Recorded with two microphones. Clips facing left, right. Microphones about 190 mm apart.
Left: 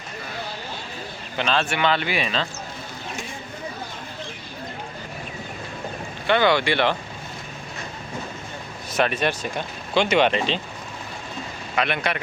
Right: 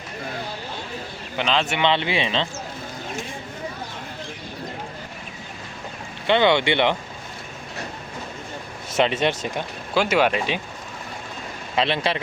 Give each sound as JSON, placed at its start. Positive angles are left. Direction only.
{"t": 1.4, "sound": "speech", "side_deg": -15}
{"t": 6.2, "sound": "speech", "side_deg": -20}
{"t": 8.9, "sound": "speech", "side_deg": -20}
{"t": 9.9, "sound": "speech", "side_deg": -5}
{"t": 11.8, "sound": "speech", "side_deg": -25}